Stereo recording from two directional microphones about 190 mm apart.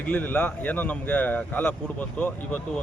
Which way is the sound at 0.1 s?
5° left (ahead or behind).